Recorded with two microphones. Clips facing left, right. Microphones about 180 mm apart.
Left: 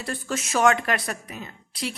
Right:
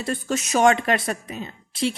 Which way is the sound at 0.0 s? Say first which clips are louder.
Right 4 dB; 20° right (ahead or behind).